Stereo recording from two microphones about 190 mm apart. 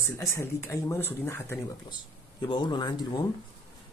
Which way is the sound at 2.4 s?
25° left (ahead or behind).